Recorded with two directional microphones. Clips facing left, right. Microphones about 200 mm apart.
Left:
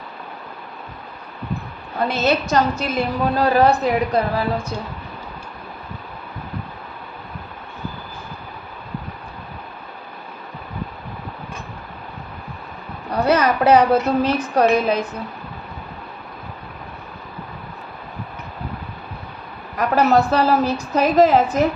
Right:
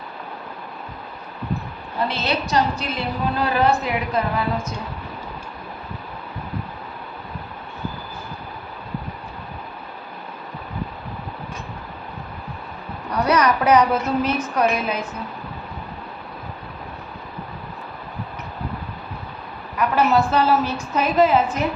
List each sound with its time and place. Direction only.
2.0 s a woman's voice: 45° left (ahead or behind)
13.1 s a woman's voice: 30° left (ahead or behind)
19.7 s a woman's voice: 40° left (ahead or behind)